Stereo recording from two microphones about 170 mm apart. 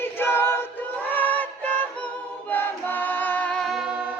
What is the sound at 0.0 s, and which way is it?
Choir, 15° left (ahead or behind).